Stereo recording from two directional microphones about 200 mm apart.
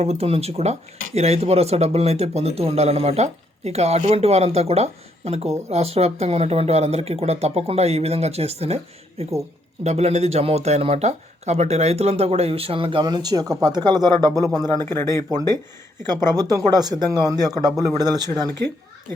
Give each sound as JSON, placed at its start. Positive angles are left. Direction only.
{"t": 0.0, "sound": "a man's voice", "side_deg": -30}
{"t": 14.8, "sound": "speech", "side_deg": 10}
{"t": 15.3, "sound": "a man's voice", "side_deg": -20}